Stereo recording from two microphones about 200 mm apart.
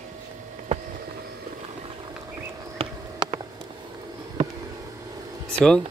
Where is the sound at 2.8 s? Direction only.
20° right (ahead or behind).